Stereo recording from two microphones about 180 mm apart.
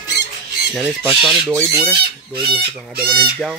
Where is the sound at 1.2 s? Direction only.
5° left (ahead or behind).